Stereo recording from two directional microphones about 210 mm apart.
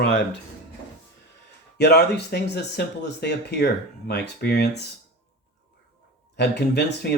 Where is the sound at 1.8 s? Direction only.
50° left (ahead or behind).